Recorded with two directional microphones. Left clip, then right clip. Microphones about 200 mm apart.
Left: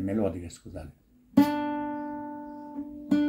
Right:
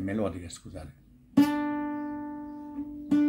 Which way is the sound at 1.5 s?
10° left (ahead or behind).